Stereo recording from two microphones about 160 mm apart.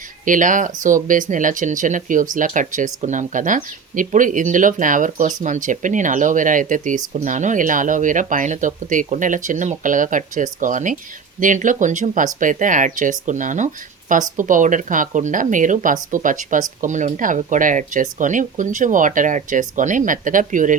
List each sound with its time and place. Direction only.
0.3 s speech: 55° right (ahead or behind)